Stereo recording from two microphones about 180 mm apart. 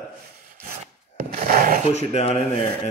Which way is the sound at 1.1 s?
55° right (ahead or behind).